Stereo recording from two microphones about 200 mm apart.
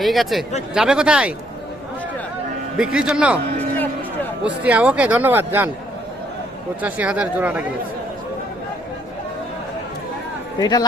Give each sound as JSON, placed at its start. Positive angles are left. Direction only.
{"t": 0.0, "sound": "speech", "side_deg": 0}
{"t": 2.7, "sound": "speech", "side_deg": -5}
{"t": 4.4, "sound": "speech", "side_deg": -5}
{"t": 6.8, "sound": "speech", "side_deg": -5}
{"t": 10.6, "sound": "speech", "side_deg": 20}